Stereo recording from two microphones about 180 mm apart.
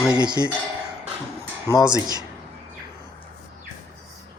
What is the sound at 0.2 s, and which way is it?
Speech, 25° right (ahead or behind).